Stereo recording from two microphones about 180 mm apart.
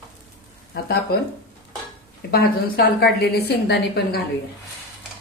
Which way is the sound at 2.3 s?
60° left (ahead or behind).